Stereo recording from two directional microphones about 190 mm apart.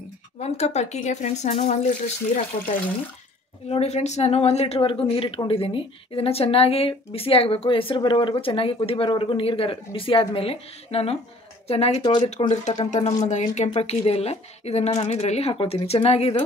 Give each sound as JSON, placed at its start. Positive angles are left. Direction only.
{"t": 0.4, "sound": "speech", "side_deg": 35}
{"t": 3.6, "sound": "speech", "side_deg": 35}